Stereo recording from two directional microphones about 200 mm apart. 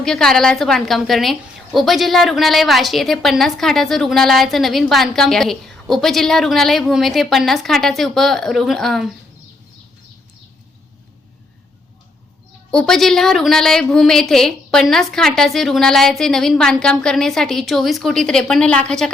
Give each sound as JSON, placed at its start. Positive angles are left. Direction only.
{"t": 0.0, "sound": "a woman's voice", "side_deg": 5}
{"t": 12.7, "sound": "a woman's voice", "side_deg": 5}